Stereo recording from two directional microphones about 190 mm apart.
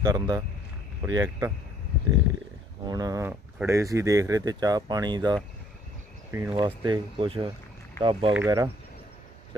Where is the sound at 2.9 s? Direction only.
20° right (ahead or behind).